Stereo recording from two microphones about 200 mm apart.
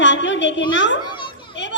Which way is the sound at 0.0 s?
65° left (ahead or behind).